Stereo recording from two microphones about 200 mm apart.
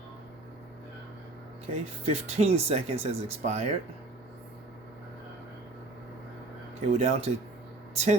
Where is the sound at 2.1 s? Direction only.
30° right (ahead or behind).